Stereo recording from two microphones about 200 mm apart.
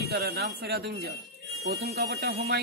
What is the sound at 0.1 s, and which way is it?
A man's voice, 55° right (ahead or behind).